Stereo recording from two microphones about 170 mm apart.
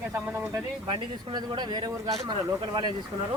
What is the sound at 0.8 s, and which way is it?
Speech, 30° right (ahead or behind).